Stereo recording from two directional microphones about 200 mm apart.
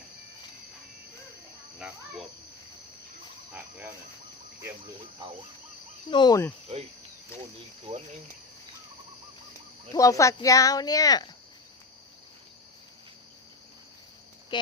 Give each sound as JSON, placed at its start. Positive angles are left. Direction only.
{"t": 3.5, "sound": "cricket", "side_deg": -10}
{"t": 6.1, "sound": "speech", "side_deg": 20}
{"t": 6.7, "sound": "cricket", "side_deg": -30}
{"t": 9.9, "sound": "speech", "side_deg": 15}
{"t": 14.5, "sound": "speech", "side_deg": 20}